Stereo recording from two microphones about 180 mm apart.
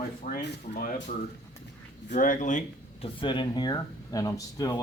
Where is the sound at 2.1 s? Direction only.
45° left (ahead or behind).